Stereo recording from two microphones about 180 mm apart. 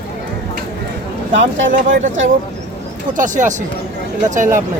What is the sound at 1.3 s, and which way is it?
Speech, 90° right.